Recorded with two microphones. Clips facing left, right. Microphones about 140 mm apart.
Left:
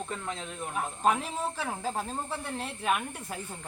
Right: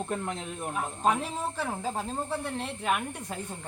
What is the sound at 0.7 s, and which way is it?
Speech, centre (ahead or behind).